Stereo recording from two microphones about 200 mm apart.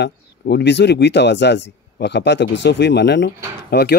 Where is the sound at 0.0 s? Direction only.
55° left (ahead or behind).